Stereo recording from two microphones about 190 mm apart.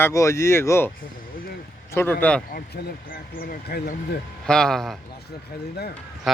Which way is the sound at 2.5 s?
55° left (ahead or behind).